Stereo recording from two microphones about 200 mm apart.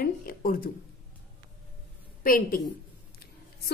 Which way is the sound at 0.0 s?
45° left (ahead or behind).